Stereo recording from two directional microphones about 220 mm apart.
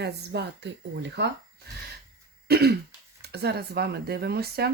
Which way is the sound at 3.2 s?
50° right (ahead or behind).